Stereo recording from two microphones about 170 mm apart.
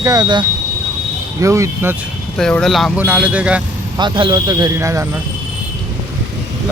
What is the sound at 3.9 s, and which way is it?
Speech, 30° right (ahead or behind).